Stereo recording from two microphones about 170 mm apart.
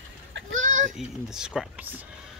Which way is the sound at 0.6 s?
50° right (ahead or behind).